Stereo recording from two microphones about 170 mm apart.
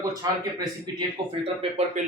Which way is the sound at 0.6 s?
30° right (ahead or behind).